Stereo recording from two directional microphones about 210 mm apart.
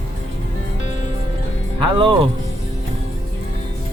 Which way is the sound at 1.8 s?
25° right (ahead or behind).